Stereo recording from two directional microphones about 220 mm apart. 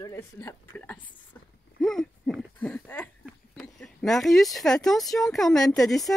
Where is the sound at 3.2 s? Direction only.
Centre (ahead or behind).